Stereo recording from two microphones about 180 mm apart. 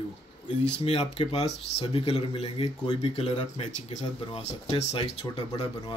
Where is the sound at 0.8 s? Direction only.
35° left (ahead or behind).